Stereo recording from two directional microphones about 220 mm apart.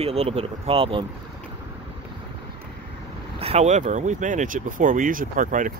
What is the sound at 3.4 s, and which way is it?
Speech, 30° right (ahead or behind).